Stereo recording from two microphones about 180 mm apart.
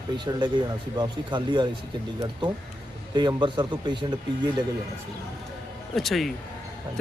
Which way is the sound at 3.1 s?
25° right (ahead or behind).